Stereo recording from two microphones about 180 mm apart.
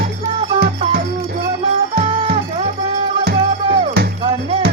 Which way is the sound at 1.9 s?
30° right (ahead or behind).